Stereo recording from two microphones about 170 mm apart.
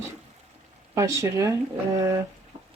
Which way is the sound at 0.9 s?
20° right (ahead or behind).